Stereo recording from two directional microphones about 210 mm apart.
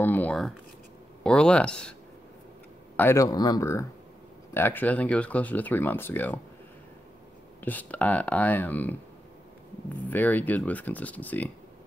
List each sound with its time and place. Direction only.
0.0 s speech: 10° left (ahead or behind)
3.0 s speech: 15° left (ahead or behind)
7.6 s speech: 5° left (ahead or behind)
10.0 s speech: 10° left (ahead or behind)